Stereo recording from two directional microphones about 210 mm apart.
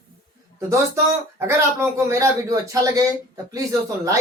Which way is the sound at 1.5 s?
15° right (ahead or behind).